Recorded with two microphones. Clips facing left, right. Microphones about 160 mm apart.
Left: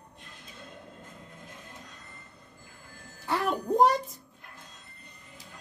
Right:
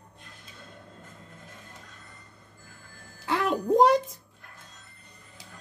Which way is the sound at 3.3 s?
80° right.